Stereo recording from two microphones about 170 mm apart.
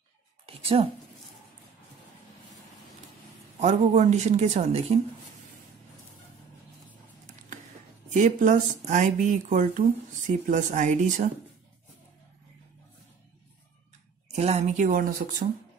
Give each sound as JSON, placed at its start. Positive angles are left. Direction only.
{"t": 0.5, "sound": "a sound", "side_deg": -35}
{"t": 3.5, "sound": "speech", "side_deg": -40}
{"t": 8.1, "sound": "speech", "side_deg": -50}
{"t": 14.3, "sound": "speech", "side_deg": -40}